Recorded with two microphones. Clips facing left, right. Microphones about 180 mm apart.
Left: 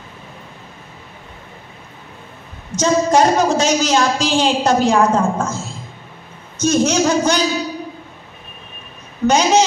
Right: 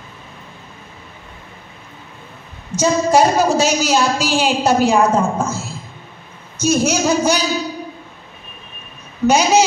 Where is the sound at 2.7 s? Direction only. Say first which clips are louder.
Even; 10° right (ahead or behind).